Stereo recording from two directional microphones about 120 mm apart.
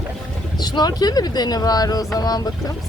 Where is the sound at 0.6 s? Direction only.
35° left (ahead or behind).